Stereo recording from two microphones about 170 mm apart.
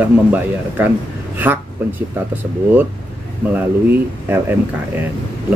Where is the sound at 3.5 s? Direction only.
10° right (ahead or behind).